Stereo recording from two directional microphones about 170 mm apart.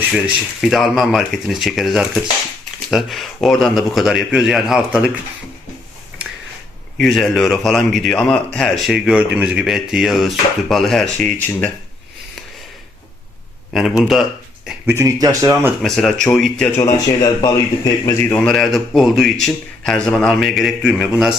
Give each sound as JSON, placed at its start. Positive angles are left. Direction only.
{"t": 0.1, "sound": "a man's voice", "side_deg": 0}
{"t": 6.9, "sound": "a man's voice", "side_deg": 0}
{"t": 14.0, "sound": "a man's voice", "side_deg": 0}
{"t": 14.8, "sound": "speech", "side_deg": -15}
{"t": 15.8, "sound": "a man's voice", "side_deg": 0}
{"t": 16.6, "sound": "a man's voice", "side_deg": 15}